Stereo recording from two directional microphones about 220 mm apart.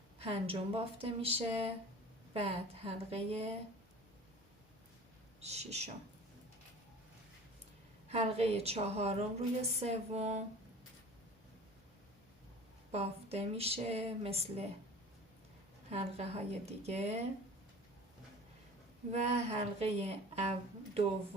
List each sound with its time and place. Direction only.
0.2 s a woman's voice: 25° right (ahead or behind)
5.4 s a woman's voice: 30° right (ahead or behind)
8.1 s a woman's voice: 30° right (ahead or behind)
12.9 s a woman's voice: 30° right (ahead or behind)
15.9 s a woman's voice: 30° right (ahead or behind)
19.1 s a woman's voice: 30° right (ahead or behind)